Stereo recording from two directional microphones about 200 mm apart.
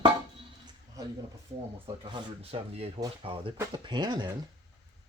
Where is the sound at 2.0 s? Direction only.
30° right (ahead or behind).